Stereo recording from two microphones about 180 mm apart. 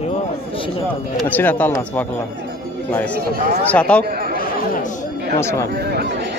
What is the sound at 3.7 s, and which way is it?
Speech, 5° left (ahead or behind).